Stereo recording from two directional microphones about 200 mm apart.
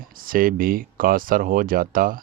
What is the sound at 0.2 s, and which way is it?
Speech, 45° right (ahead or behind).